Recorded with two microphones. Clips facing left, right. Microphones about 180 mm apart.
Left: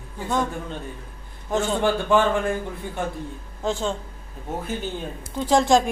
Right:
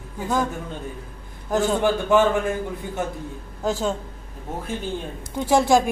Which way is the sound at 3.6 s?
5° right (ahead or behind).